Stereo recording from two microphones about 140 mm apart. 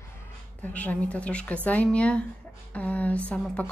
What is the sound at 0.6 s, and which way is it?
Speech, 10° left (ahead or behind).